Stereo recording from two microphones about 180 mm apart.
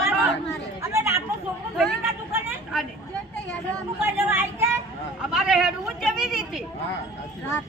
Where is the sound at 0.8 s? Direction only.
15° right (ahead or behind).